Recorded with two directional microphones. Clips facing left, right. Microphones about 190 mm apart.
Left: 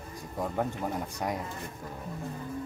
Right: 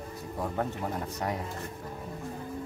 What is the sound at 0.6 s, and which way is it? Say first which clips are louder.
Speech: left 1 dB; 10° left (ahead or behind).